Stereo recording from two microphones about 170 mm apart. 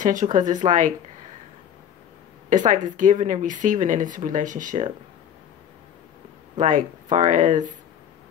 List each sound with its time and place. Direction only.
0.0 s speech: 50° right (ahead or behind)
2.5 s speech: 45° right (ahead or behind)
6.6 s speech: 45° right (ahead or behind)